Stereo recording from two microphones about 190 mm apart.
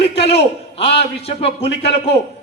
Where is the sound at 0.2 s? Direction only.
30° left (ahead or behind).